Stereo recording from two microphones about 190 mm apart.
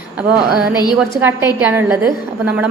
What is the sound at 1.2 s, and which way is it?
A woman's voice, 10° right (ahead or behind).